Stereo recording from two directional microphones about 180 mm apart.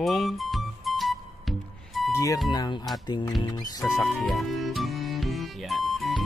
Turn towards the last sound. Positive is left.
turn(degrees=0)  # may be behind; listen again after turning